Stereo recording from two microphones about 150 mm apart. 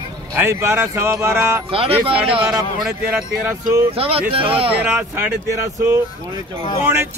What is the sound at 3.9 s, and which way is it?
Speech, 40° right (ahead or behind).